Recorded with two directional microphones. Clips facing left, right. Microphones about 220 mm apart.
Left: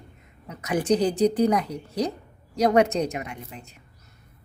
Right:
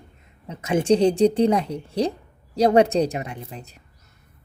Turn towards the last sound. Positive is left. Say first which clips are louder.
# right 3 dB
turn(degrees=-35)  # may be behind; listen again after turning